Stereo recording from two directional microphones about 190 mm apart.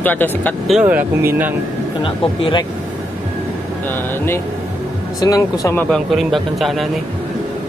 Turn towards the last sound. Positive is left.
turn(degrees=0)  # may be behind; listen again after turning